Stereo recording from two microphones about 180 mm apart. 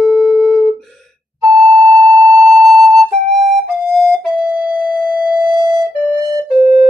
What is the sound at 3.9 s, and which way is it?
Music, 5° left (ahead or behind).